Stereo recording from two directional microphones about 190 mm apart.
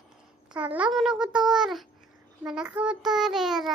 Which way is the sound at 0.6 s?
5° right (ahead or behind).